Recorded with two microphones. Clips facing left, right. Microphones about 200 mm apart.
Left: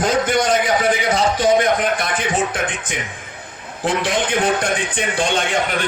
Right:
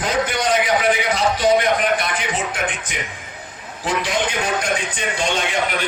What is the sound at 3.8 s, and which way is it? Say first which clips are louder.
A man's voice: left 2 dB; 55° left (ahead or behind).